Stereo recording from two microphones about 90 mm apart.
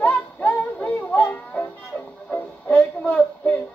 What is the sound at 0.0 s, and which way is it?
Music, 15° left (ahead or behind).